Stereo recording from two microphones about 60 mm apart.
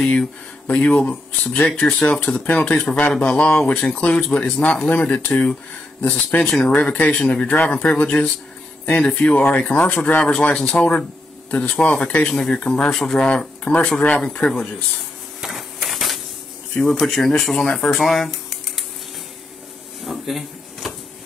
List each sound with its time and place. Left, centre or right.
0.0 s speech: centre
0.7 s speech: left
1.8 s speech: centre; by 6.5 s left
6.5 s speech: centre; by 10.3 s left
10.3 s speech: centre
11.8 s speech: centre
12.2 s speech: centre
15.4 s printer: centre
16.8 s speech: centre
20.1 s a sound: centre